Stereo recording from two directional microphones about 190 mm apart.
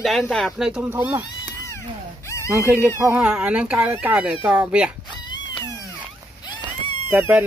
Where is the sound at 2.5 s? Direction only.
5° right (ahead or behind).